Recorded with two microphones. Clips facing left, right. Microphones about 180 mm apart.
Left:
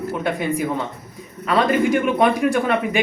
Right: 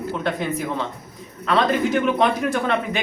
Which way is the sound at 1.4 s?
10° left (ahead or behind).